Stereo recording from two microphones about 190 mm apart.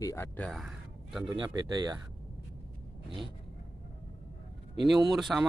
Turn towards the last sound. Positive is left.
turn(degrees=0)  # may be behind; listen again after turning